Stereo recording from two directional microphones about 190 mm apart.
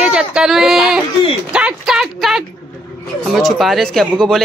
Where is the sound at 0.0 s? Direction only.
5° right (ahead or behind).